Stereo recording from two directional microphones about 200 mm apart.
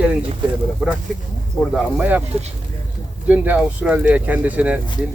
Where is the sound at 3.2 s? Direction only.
10° right (ahead or behind).